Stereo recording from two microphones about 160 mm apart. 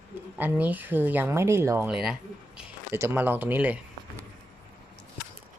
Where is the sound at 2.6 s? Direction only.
15° right (ahead or behind).